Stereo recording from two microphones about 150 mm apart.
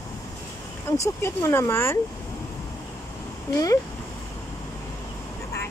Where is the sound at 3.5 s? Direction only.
20° left (ahead or behind).